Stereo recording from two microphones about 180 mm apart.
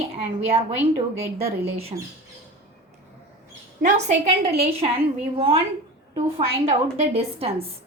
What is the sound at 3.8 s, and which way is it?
A woman's voice, 40° right (ahead or behind).